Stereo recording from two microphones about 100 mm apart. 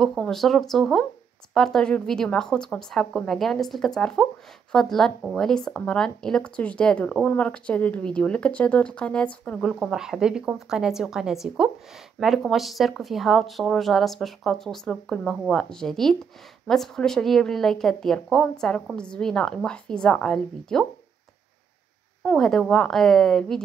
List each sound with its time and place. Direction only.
0.0 s speech: 5° left (ahead or behind)
9.8 s speech: 5° right (ahead or behind)
22.2 s speech: 10° left (ahead or behind)